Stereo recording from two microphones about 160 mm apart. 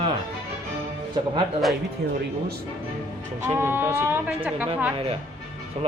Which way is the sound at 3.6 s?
15° right (ahead or behind).